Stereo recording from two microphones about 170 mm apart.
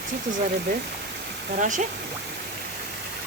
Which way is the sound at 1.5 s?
50° right (ahead or behind).